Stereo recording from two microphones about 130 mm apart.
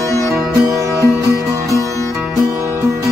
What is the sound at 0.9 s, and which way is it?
Music, 25° right (ahead or behind).